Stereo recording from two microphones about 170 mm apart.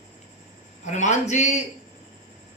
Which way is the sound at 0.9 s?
45° left (ahead or behind).